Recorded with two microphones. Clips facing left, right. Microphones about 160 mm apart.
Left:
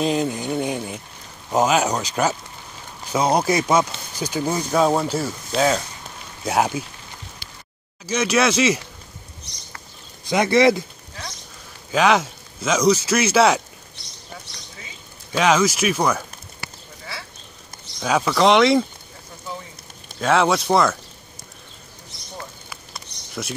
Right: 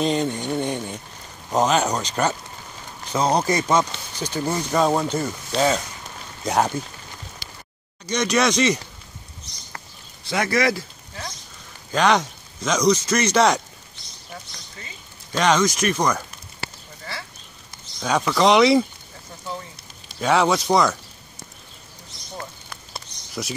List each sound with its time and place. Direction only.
0.0 s a man's voice: 5° left (ahead or behind)
8.1 s a man's voice: 5° left (ahead or behind)
10.2 s speech: 20° left (ahead or behind)
11.9 s a man's voice: 5° left (ahead or behind)
15.3 s speech: 5° left (ahead or behind)
18.0 s a man's voice: 5° left (ahead or behind)
20.2 s a man's voice: centre (ahead or behind)